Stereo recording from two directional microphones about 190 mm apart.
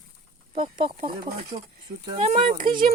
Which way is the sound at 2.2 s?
40° right (ahead or behind).